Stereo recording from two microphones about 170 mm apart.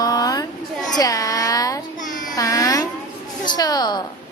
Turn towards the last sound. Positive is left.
turn(degrees=25)  # may be behind; listen again after turning